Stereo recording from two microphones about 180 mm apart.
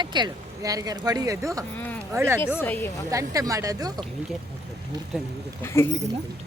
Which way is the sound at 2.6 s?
15° left (ahead or behind).